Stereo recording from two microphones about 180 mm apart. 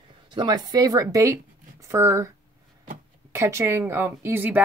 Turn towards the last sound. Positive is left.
turn(degrees=-10)  # may be behind; listen again after turning